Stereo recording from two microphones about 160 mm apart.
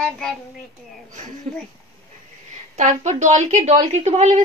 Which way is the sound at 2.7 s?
45° right (ahead or behind).